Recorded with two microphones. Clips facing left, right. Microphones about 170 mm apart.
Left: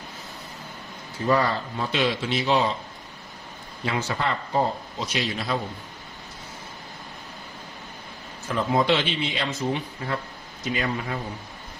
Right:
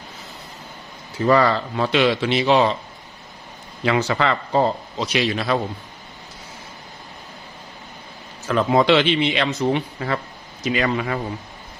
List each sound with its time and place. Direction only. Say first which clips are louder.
1.2 s speech: right 6 dB; 90° right; by 2.8 s 75° right (ahead or behind)
3.8 s a man's voice: right 7 dB; 90° right
8.5 s speech: right 6 dB; 85° right